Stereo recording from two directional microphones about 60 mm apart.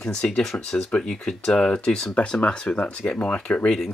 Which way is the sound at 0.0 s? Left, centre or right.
Centre.